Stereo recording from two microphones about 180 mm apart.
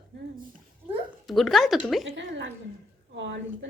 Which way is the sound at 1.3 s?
Centre (ahead or behind).